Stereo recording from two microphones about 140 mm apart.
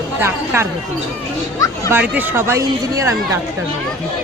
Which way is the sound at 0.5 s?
15° right (ahead or behind).